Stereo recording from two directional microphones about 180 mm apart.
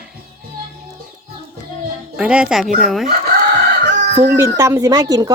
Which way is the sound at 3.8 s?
75° right (ahead or behind).